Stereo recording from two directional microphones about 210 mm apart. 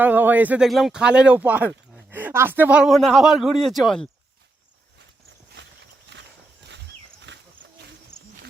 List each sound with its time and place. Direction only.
0.0 s speech: 10° right (ahead or behind)
5.6 s clip-clop: 60° right (ahead or behind)
6.1 s horse: 55° right (ahead or behind)
7.3 s wild animals: 60° right (ahead or behind)